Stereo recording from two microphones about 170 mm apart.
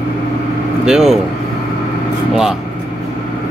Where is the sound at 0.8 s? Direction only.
Centre (ahead or behind).